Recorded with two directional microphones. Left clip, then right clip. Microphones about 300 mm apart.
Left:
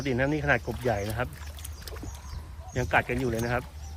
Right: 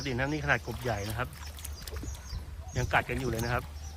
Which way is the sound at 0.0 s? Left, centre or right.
Centre.